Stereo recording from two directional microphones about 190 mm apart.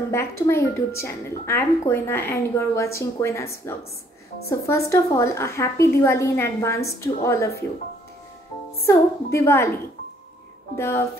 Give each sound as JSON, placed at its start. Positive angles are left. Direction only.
{"t": 0.1, "sound": "a woman's voice", "side_deg": 15}
{"t": 8.8, "sound": "a woman's voice", "side_deg": 15}
{"t": 10.8, "sound": "a woman's voice", "side_deg": 15}